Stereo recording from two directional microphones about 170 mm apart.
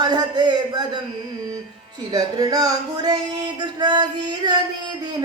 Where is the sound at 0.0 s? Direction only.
25° right (ahead or behind).